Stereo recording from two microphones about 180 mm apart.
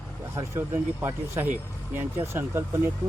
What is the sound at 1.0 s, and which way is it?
Speech, 10° right (ahead or behind).